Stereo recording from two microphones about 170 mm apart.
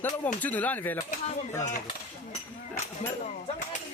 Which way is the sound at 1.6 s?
45° left (ahead or behind).